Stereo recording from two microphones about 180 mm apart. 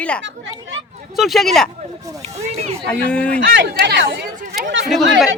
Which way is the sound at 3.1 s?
5° left (ahead or behind).